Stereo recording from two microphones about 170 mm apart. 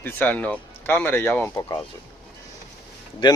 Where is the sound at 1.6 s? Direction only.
25° left (ahead or behind).